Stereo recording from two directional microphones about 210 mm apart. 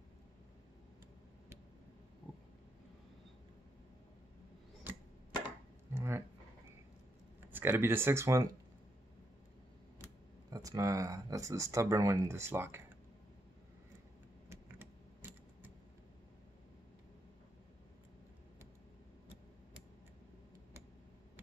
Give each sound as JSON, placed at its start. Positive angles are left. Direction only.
{"t": 5.9, "sound": "a sound", "side_deg": -10}
{"t": 7.5, "sound": "speech", "side_deg": -10}
{"t": 10.5, "sound": "speech", "side_deg": -15}
{"t": 14.5, "sound": "typing", "side_deg": -10}